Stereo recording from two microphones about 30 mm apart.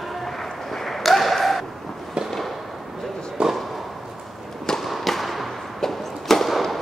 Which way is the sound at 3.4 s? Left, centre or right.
Right.